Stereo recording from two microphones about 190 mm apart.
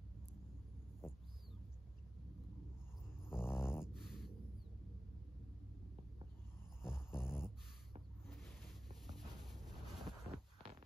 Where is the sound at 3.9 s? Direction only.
Centre (ahead or behind).